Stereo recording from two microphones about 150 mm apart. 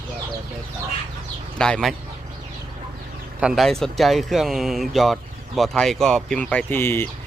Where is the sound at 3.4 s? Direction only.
Centre (ahead or behind).